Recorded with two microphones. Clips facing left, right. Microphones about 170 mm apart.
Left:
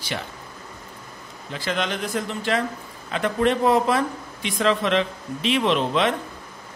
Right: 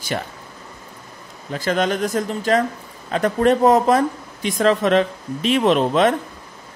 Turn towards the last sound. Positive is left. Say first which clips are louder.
# right 5 dB
turn(degrees=-45)  # may be behind; listen again after turning